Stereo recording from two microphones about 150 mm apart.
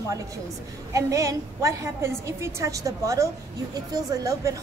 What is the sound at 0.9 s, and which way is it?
A woman's voice, 20° right (ahead or behind).